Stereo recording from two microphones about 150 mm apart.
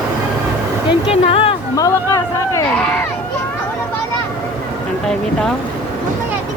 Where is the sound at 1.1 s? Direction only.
40° left (ahead or behind).